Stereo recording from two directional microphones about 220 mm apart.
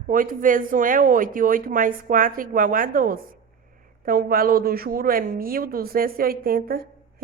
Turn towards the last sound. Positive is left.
turn(degrees=-45)  # may be behind; listen again after turning